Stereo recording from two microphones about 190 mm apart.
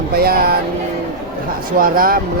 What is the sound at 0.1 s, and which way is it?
Speech, 55° right (ahead or behind).